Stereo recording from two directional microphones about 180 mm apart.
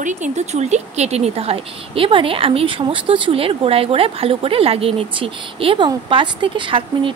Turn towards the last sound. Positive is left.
turn(degrees=-30)  # may be behind; listen again after turning